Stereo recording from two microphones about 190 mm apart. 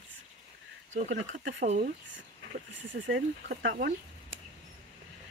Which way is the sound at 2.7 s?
75° right (ahead or behind).